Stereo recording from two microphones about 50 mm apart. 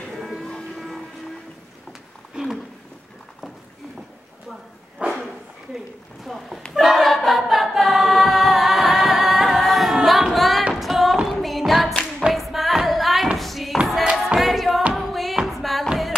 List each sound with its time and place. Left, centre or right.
0.4 s music: centre
0.7 s train: centre
1.9 s a sound: centre
5.0 s dog: right
6.2 s a sound: centre
6.7 s choir: centre
10.0 s singing: centre
10.7 s music: centre
13.4 s a sound: centre
14.1 s music: centre